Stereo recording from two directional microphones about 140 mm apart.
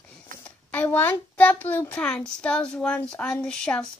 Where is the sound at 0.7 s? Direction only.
10° left (ahead or behind).